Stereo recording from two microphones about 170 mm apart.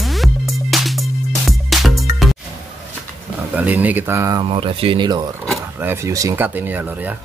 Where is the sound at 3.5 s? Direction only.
10° right (ahead or behind).